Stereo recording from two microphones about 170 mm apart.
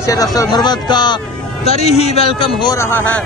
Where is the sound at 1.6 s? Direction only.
40° left (ahead or behind).